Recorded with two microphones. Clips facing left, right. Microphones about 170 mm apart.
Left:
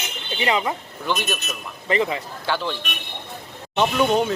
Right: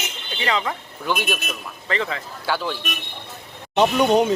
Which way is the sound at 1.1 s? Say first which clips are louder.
Right 1 dB; 10° right (ahead or behind).